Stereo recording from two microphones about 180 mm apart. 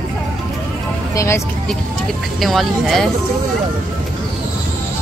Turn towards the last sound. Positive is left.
turn(degrees=0)  # may be behind; listen again after turning